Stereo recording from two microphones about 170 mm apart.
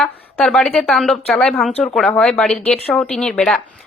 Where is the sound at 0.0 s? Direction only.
Centre (ahead or behind).